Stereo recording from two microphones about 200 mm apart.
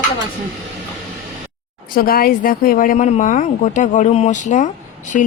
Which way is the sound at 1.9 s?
45° left (ahead or behind).